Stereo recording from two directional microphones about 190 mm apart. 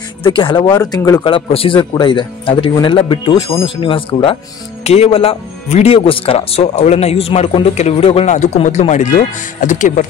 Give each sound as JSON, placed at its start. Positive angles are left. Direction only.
{"t": 0.2, "sound": "speech", "side_deg": 25}